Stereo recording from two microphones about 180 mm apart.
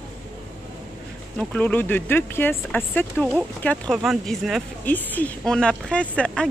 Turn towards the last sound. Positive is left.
turn(degrees=5)  # may be behind; listen again after turning